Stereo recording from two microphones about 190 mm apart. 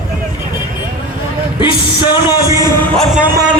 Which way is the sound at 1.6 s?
20° left (ahead or behind).